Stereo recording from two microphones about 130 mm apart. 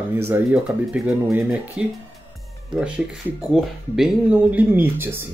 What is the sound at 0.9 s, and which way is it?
Speech, 5° right (ahead or behind).